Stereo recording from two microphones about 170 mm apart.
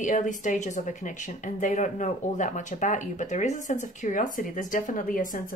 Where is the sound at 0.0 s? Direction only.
50° left (ahead or behind).